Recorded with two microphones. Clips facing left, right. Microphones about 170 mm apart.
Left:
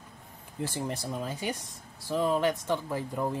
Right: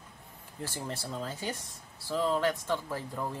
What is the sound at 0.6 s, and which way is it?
Speech, 20° left (ahead or behind).